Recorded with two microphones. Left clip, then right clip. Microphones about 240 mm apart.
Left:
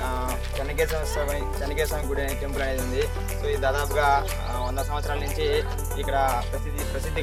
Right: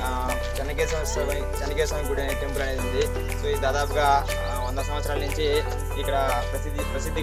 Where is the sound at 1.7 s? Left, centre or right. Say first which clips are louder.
Right 1 dB; centre.